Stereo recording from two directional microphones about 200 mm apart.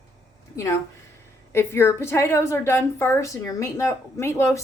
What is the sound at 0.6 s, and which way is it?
A woman's voice, 15° left (ahead or behind).